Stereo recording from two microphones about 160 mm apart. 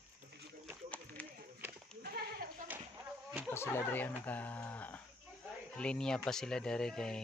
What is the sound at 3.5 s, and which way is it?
Speech, 15° left (ahead or behind).